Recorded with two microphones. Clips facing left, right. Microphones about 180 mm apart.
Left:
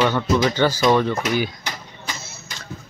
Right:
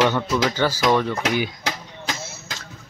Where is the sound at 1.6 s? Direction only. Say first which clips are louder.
Right 4 dB; 90° right.